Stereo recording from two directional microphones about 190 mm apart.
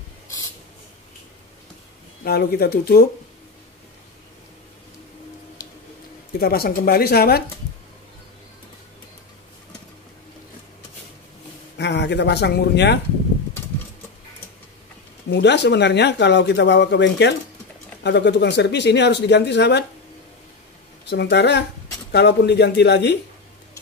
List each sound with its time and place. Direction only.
2.2 s speech: 55° left (ahead or behind)
6.4 s speech: 50° left (ahead or behind)
11.8 s speech: 65° left (ahead or behind)
15.3 s speech: 65° left (ahead or behind)
21.0 s speech: 65° left (ahead or behind)